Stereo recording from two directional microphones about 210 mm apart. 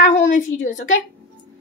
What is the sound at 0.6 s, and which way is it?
Speech, 35° left (ahead or behind).